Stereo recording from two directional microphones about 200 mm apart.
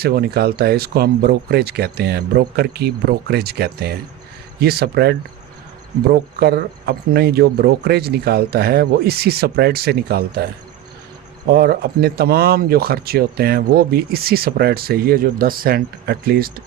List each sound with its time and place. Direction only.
0.0 s speech: 50° right (ahead or behind)
6.4 s speech: 55° right (ahead or behind)
11.5 s speech: 50° right (ahead or behind)